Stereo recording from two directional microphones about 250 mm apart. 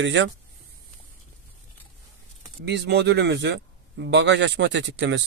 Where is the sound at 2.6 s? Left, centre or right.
Right.